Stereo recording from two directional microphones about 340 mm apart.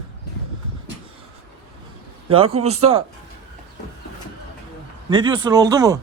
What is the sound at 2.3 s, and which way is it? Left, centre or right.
Speech, centre.